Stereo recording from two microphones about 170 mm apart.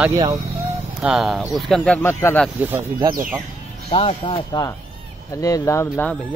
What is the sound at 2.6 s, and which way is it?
Speech, 10° right (ahead or behind).